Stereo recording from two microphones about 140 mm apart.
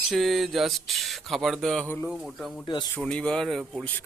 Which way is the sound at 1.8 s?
15° left (ahead or behind).